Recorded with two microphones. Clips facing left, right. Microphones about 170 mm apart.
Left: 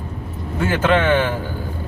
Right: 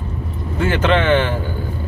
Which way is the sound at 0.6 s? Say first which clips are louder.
Right 1 dB; 5° left (ahead or behind).